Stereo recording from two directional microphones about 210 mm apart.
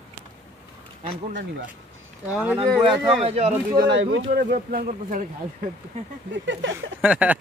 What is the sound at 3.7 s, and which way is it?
Speech, 55° right (ahead or behind).